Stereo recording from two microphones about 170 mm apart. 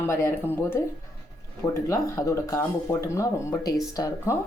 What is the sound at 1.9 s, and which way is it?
Speech, 15° left (ahead or behind).